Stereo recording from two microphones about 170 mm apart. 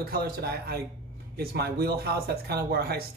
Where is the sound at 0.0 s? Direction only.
65° right (ahead or behind).